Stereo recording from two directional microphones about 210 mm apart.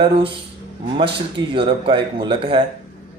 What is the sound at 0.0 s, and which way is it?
Speech, 25° right (ahead or behind).